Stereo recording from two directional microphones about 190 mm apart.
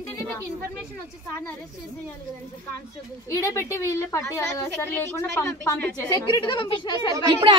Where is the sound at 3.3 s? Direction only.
15° left (ahead or behind).